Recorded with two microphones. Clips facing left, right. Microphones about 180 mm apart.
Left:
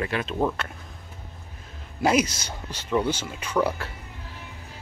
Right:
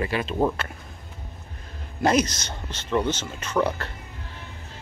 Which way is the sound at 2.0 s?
10° left (ahead or behind).